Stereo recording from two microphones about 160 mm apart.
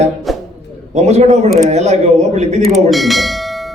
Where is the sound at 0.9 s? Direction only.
45° right (ahead or behind).